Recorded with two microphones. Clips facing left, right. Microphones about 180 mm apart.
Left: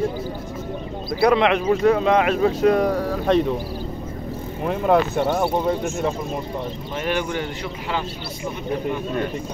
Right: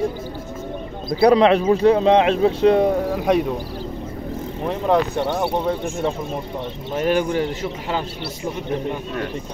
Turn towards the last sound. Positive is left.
turn(degrees=-40)  # may be behind; listen again after turning